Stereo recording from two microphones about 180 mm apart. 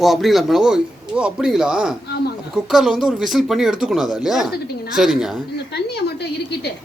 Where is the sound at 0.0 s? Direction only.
Centre (ahead or behind).